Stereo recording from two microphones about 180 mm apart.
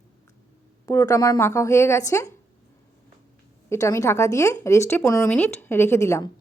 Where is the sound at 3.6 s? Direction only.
15° left (ahead or behind).